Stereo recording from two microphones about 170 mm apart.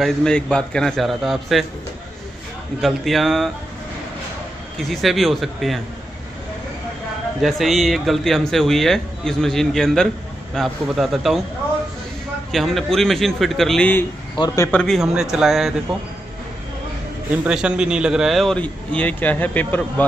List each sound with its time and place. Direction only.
0.0 s a man's voice: 5° left (ahead or behind)
2.8 s a man's voice: centre (ahead or behind)
4.7 s a man's voice: centre (ahead or behind)
7.4 s a man's voice: centre (ahead or behind)
12.4 s a man's voice: centre (ahead or behind)
14.3 s a man's voice: 20° left (ahead or behind)
14.7 s a man's voice: 5° left (ahead or behind)
17.5 s a man's voice: 5° right (ahead or behind)